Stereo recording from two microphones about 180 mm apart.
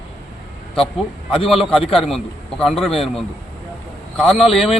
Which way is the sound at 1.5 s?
Centre (ahead or behind).